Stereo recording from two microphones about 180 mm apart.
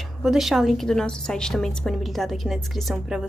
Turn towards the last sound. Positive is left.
turn(degrees=0)  # may be behind; listen again after turning